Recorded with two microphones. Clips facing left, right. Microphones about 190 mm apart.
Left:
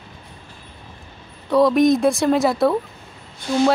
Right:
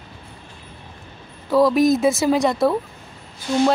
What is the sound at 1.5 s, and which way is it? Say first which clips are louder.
Speech: left 1 dB; centre (ahead or behind).